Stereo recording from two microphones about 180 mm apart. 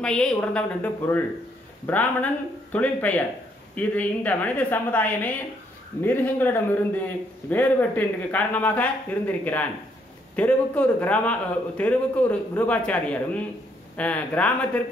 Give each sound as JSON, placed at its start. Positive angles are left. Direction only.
{"t": 0.0, "sound": "a woman's voice", "side_deg": 5}